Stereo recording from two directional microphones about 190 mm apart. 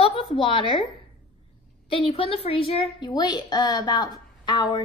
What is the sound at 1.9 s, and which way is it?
A woman's voice, 30° left (ahead or behind).